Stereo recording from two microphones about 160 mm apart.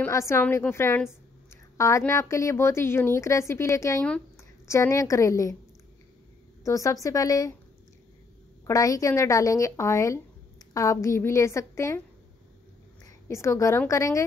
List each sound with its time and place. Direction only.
0.0 s a woman's voice: 15° left (ahead or behind)
6.6 s speech: 20° left (ahead or behind)
8.6 s a woman's voice: 20° left (ahead or behind)
13.0 s a woman's voice: 15° left (ahead or behind)